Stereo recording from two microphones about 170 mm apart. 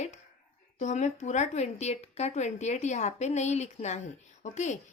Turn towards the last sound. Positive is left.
turn(degrees=45)  # may be behind; listen again after turning